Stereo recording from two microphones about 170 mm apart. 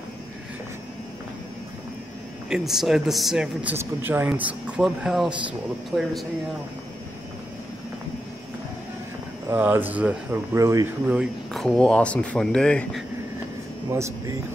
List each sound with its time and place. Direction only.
2.5 s speech: centre (ahead or behind)
9.5 s speech: 10° right (ahead or behind)
11.1 s speech: centre (ahead or behind)
13.9 s speech: 15° right (ahead or behind)